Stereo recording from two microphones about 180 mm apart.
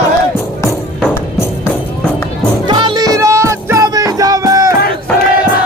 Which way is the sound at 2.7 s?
25° right (ahead or behind).